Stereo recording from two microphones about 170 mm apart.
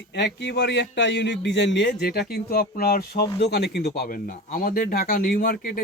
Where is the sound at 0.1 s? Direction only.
90° left.